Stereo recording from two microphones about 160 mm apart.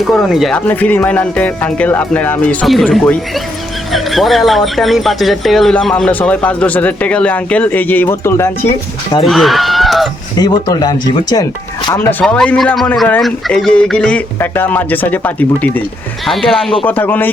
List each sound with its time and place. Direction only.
0.1 s speech: centre (ahead or behind); by 8.4 s 15° left (ahead or behind)
9.2 s speech: centre (ahead or behind)
10.3 s speech: 25° left (ahead or behind)
12.2 s speech: 5° left (ahead or behind)